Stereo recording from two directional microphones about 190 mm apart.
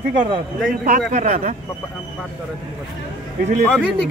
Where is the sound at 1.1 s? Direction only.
40° right (ahead or behind).